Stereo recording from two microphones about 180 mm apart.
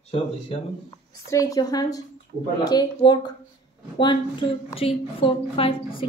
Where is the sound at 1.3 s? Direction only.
20° left (ahead or behind).